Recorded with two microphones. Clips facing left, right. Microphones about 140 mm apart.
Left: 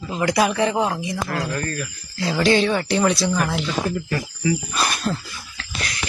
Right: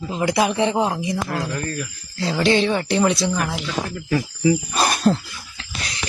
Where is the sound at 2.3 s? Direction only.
25° right (ahead or behind).